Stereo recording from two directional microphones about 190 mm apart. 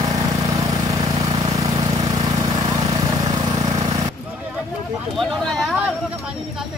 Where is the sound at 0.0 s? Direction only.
15° right (ahead or behind).